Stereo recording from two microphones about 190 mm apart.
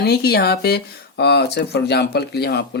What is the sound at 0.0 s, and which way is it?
Speech, 55° left (ahead or behind).